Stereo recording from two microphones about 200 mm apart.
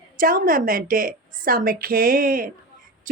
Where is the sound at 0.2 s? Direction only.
45° right (ahead or behind).